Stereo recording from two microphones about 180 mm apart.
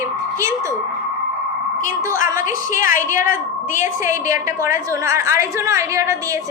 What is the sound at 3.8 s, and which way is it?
A woman's voice, 15° right (ahead or behind).